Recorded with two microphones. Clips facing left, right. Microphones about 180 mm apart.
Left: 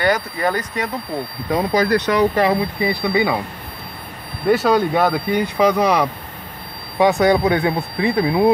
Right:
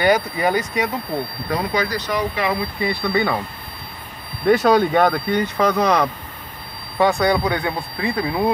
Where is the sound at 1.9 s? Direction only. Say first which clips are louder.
Left 7 dB; 75° left (ahead or behind).